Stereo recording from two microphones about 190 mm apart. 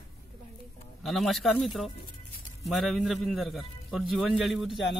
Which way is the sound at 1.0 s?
Centre (ahead or behind).